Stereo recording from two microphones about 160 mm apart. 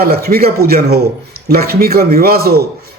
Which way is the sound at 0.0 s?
75° right (ahead or behind).